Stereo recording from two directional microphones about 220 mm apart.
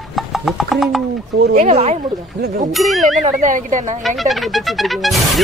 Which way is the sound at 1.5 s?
30° right (ahead or behind).